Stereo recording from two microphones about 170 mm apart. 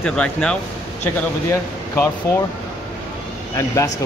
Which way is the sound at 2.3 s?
15° left (ahead or behind).